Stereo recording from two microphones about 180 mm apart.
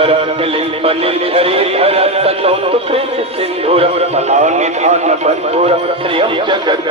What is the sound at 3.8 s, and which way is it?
Speech, 35° right (ahead or behind).